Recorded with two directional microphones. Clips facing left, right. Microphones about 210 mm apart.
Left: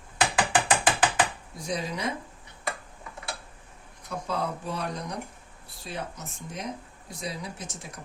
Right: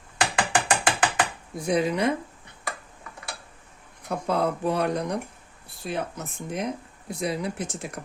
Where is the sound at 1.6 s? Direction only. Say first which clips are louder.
Right 8 dB; 60° right (ahead or behind).